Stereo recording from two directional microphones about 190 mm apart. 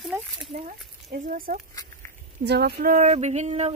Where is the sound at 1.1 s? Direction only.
45° right (ahead or behind).